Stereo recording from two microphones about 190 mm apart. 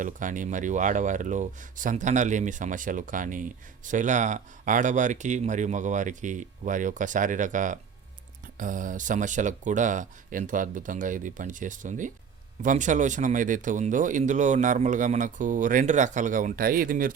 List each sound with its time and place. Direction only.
0.0 s speech: 45° right (ahead or behind)